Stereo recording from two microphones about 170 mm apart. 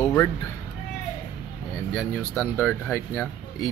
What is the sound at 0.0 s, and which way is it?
Cat, 20° left (ahead or behind).